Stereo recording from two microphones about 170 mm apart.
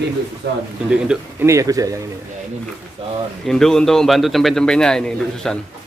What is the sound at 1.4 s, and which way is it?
Speech, 20° right (ahead or behind).